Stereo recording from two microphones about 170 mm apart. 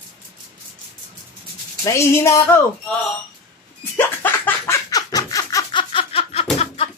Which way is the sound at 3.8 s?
10° left (ahead or behind).